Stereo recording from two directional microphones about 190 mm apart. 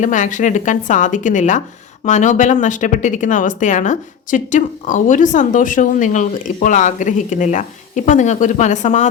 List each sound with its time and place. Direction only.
0.0 s speech: 40° left (ahead or behind)